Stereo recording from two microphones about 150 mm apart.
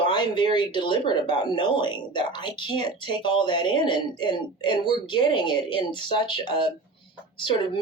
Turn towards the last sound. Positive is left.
turn(degrees=35)  # may be behind; listen again after turning